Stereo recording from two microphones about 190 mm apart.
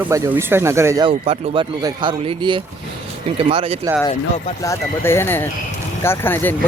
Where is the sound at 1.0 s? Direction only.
30° right (ahead or behind).